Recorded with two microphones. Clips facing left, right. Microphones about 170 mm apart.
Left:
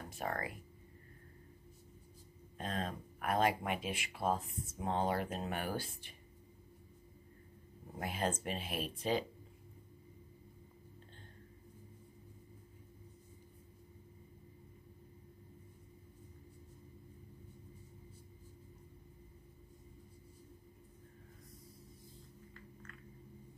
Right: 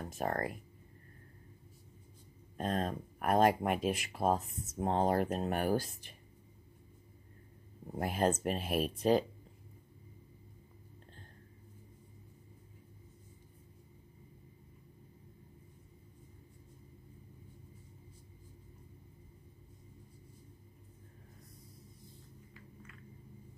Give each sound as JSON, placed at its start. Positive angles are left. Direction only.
{"t": 0.1, "sound": "speech", "side_deg": -45}
{"t": 2.5, "sound": "speech", "side_deg": -45}
{"t": 8.0, "sound": "speech", "side_deg": -45}
{"t": 22.5, "sound": "a sound", "side_deg": -5}